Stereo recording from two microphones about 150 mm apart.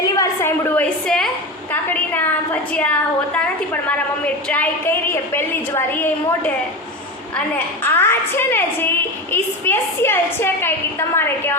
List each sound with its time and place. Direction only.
0.0 s a sound: 20° left (ahead or behind)
1.0 s a woman's voice: 5° left (ahead or behind)
7.8 s a woman's voice: 15° left (ahead or behind)